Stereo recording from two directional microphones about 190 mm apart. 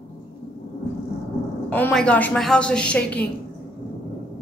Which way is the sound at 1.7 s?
10° left (ahead or behind).